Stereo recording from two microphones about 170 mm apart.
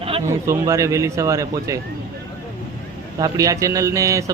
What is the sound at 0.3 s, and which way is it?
A man's voice, 20° right (ahead or behind).